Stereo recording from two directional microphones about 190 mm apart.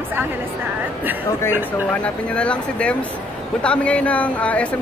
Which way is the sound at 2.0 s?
5° left (ahead or behind).